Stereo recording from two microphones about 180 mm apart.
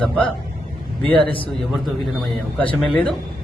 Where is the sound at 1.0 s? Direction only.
30° right (ahead or behind).